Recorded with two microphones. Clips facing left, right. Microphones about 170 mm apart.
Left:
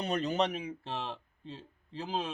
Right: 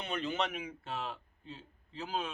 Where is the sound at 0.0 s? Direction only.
40° left (ahead or behind).